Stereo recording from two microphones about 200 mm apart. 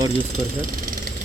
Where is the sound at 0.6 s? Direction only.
45° right (ahead or behind).